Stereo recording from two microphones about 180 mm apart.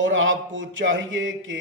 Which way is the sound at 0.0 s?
90° right.